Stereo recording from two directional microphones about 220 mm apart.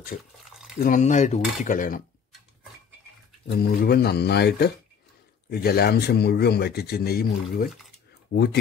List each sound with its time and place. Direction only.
0.8 s speech: 35° left (ahead or behind)
3.4 s speech: 45° left (ahead or behind)